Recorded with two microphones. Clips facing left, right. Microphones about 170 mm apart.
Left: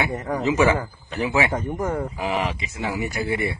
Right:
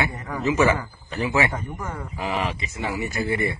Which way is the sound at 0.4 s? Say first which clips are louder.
Even; 15° left (ahead or behind).